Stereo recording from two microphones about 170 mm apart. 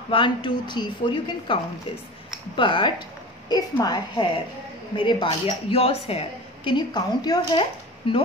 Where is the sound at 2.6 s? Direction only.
30° left (ahead or behind).